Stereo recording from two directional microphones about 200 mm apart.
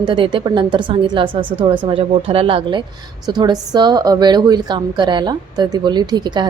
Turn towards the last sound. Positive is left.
turn(degrees=-20)  # may be behind; listen again after turning